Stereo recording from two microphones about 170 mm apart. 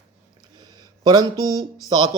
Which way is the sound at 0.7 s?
25° right (ahead or behind).